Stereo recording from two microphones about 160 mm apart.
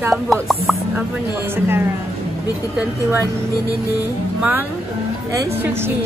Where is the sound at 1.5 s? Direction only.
15° right (ahead or behind).